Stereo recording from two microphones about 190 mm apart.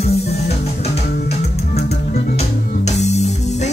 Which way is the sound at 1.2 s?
35° left (ahead or behind).